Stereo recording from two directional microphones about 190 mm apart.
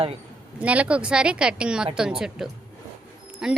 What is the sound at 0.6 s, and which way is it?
A woman's voice, 5° right (ahead or behind).